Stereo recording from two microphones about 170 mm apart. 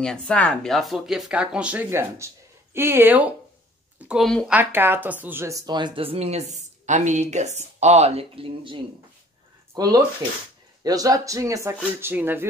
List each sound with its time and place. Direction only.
0.0 s speech: 5° left (ahead or behind)
4.5 s speech: 10° right (ahead or behind)